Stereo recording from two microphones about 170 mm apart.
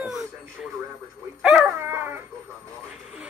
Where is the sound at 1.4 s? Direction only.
5° right (ahead or behind).